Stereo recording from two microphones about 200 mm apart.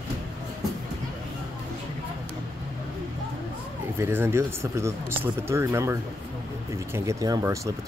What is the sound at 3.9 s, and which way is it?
Speech, 10° right (ahead or behind).